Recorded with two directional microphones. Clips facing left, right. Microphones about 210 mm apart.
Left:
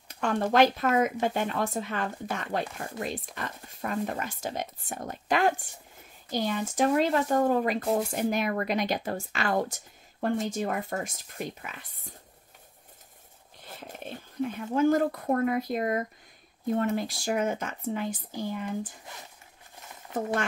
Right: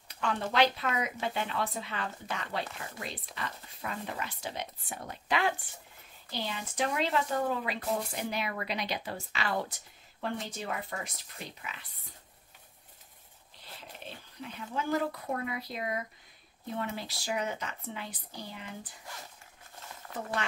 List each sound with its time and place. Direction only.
0.1 s speech: 45° left (ahead or behind)
13.6 s speech: 50° left (ahead or behind)